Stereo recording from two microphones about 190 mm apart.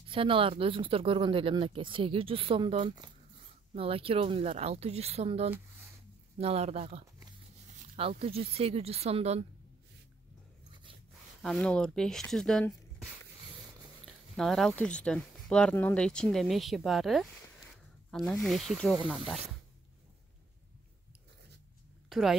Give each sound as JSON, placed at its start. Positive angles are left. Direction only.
{"t": 0.1, "sound": "speech", "side_deg": -30}
{"t": 10.7, "sound": "a sound", "side_deg": -25}
{"t": 11.4, "sound": "speech", "side_deg": 5}
{"t": 14.0, "sound": "a sound", "side_deg": 0}
{"t": 14.8, "sound": "speech", "side_deg": 5}
{"t": 22.1, "sound": "speech", "side_deg": 0}